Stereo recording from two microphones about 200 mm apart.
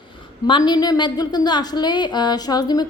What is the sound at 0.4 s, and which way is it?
A woman's voice, 20° left (ahead or behind).